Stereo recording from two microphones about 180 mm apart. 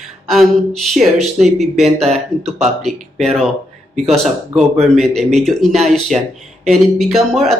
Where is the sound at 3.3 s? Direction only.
Centre (ahead or behind).